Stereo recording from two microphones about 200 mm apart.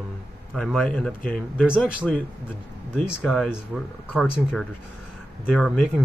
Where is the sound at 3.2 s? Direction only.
5° left (ahead or behind).